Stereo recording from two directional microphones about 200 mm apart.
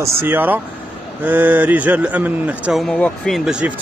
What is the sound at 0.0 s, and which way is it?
A man's voice, 10° right (ahead or behind).